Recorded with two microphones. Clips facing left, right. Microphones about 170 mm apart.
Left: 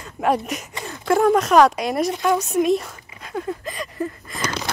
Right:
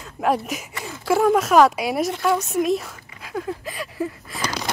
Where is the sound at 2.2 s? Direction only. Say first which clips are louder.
Left 2 dB; centre (ahead or behind).